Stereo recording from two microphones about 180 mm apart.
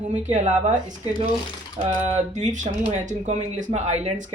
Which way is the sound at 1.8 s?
35° right (ahead or behind).